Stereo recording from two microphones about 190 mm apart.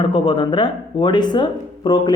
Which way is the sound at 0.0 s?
25° left (ahead or behind).